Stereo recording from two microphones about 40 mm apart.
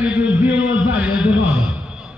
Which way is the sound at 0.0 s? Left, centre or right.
Right.